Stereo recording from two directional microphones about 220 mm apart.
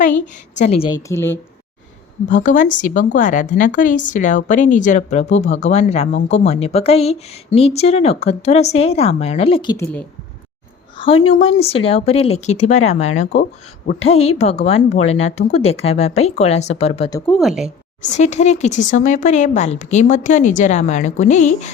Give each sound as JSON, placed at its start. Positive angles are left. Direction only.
{"t": 0.5, "sound": "speech", "side_deg": 30}
{"t": 1.0, "sound": "speech", "side_deg": 10}
{"t": 2.3, "sound": "a woman's voice", "side_deg": 35}
{"t": 10.9, "sound": "a sound", "side_deg": 25}
{"t": 11.3, "sound": "speech", "side_deg": 25}
{"t": 17.2, "sound": "speech", "side_deg": 5}
{"t": 18.1, "sound": "a woman's voice", "side_deg": 30}